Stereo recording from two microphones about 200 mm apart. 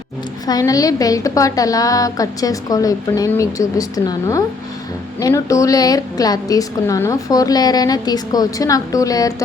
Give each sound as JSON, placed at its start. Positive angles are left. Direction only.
{"t": 0.4, "sound": "a woman's voice", "side_deg": 20}